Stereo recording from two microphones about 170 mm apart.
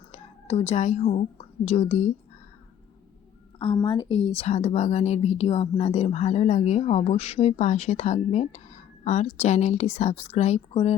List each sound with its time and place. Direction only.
0.1 s a woman's voice: 40° left (ahead or behind)
3.6 s speech: 25° left (ahead or behind)